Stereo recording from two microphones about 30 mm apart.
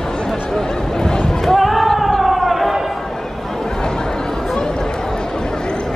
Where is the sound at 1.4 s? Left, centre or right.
Centre.